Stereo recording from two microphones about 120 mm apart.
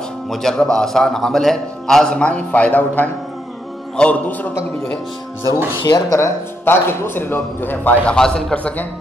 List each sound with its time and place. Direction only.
0.3 s a man's voice: 5° left (ahead or behind)
5.8 s speech: 35° left (ahead or behind)
6.1 s a man's voice: 20° left (ahead or behind)